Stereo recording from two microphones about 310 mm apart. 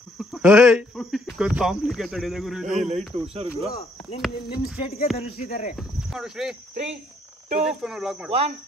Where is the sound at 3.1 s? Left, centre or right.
Centre.